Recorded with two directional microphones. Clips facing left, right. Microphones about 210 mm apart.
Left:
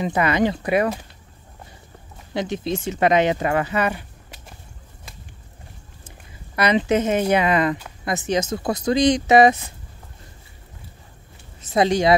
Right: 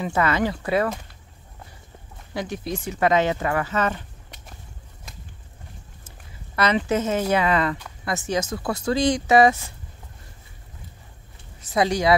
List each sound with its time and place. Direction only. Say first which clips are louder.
0.0 s speech: left 3 dB; 15° left (ahead or behind)
2.3 s speech: left 4 dB; 25° left (ahead or behind)
6.0 s speech: left 4 dB; 15° left (ahead or behind)
11.6 s speech: left 3 dB; 25° left (ahead or behind)